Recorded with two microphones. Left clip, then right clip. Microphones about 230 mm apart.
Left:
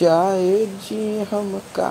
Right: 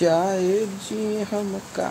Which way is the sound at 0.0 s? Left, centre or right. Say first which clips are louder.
Left 4 dB; centre.